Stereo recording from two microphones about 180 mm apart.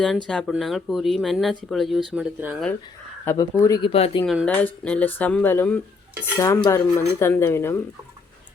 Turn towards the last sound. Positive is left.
turn(degrees=15)  # may be behind; listen again after turning